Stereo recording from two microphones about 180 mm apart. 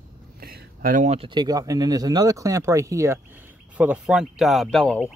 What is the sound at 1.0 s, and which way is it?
Speech, 35° right (ahead or behind).